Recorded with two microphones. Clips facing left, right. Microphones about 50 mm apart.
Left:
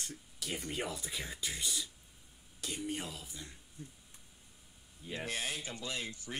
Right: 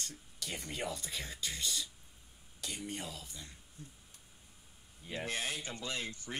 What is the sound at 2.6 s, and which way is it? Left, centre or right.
Speech, centre.